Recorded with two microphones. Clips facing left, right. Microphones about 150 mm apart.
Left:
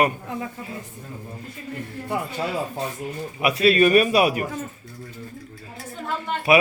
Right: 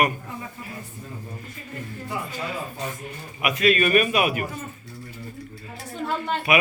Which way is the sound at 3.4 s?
35° left (ahead or behind).